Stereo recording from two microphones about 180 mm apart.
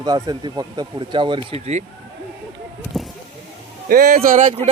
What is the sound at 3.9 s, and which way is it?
Speech, 50° right (ahead or behind).